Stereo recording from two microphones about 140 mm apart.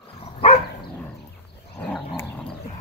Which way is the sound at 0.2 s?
45° left (ahead or behind).